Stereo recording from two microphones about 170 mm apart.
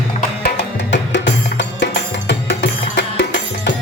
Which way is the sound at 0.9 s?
90° left.